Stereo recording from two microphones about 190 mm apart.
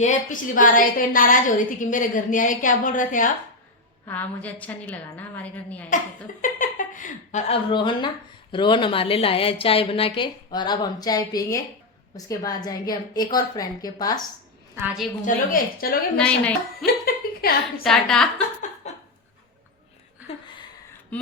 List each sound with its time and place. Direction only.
0.0 s a woman's voice: 40° left (ahead or behind)
4.0 s a woman's voice: 10° left (ahead or behind)
6.4 s a woman's voice: 45° left (ahead or behind); by 14.2 s 20° left (ahead or behind)
14.8 s a woman's voice: 10° right (ahead or behind)
15.2 s a woman's voice: 50° left (ahead or behind)
16.1 s a woman's voice: 5° left (ahead or behind)
17.4 s a woman's voice: 50° left (ahead or behind)
17.8 s a woman's voice: centre (ahead or behind)
18.8 s a sound: 35° left (ahead or behind)